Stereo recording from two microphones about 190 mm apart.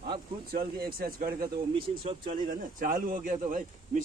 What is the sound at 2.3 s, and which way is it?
Speech, 45° right (ahead or behind).